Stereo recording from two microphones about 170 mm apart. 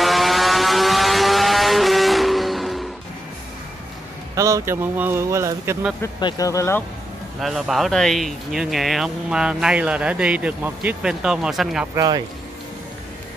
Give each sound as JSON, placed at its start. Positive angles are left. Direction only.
{"t": 0.0, "sound": "vehicle", "side_deg": 0}
{"t": 4.4, "sound": "speech", "side_deg": -20}
{"t": 6.1, "sound": "speech", "side_deg": 25}
{"t": 7.3, "sound": "speech", "side_deg": 0}
{"t": 11.9, "sound": "speech", "side_deg": -20}